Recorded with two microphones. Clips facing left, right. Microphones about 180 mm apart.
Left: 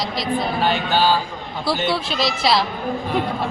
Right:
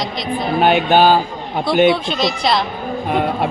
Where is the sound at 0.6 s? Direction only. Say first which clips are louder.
Right 9 dB; 60° right (ahead or behind).